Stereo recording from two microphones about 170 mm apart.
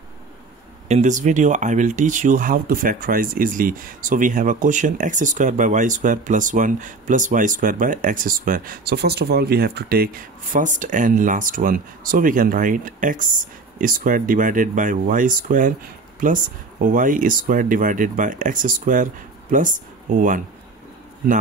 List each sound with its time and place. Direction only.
0.8 s speech: 45° right (ahead or behind)